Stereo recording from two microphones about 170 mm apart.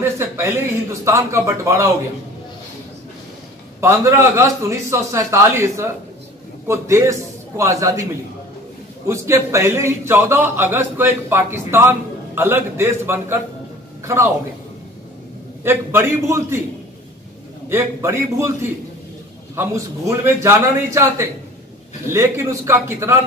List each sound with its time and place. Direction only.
0.0 s a sound: 15° right (ahead or behind)
1.0 s a man's voice: 15° right (ahead or behind)
3.8 s a man's voice: 15° right (ahead or behind)
9.0 s a man's voice: 15° right (ahead or behind)
15.6 s a man's voice: 15° right (ahead or behind)
17.6 s a man's voice: 15° right (ahead or behind)